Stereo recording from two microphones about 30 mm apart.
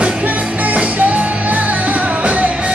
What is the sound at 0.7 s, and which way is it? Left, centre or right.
Music, right.